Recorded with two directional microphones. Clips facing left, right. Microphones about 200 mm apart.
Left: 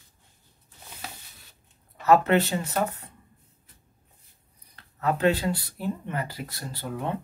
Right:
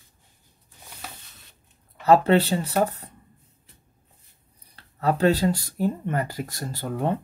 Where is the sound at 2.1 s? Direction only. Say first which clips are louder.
Right 3 dB; 30° right (ahead or behind).